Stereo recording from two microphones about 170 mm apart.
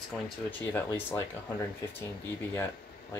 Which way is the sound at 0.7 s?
15° left (ahead or behind).